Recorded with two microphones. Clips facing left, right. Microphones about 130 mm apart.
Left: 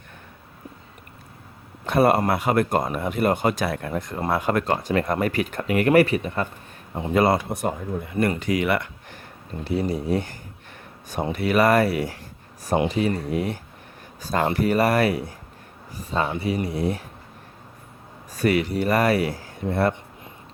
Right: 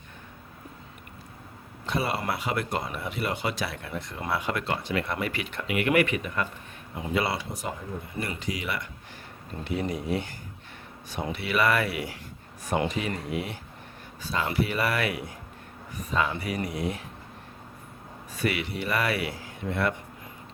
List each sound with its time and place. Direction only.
1.9 s speech: 55° left (ahead or behind)
9.6 s speech: 35° left (ahead or behind)
18.3 s speech: 40° left (ahead or behind)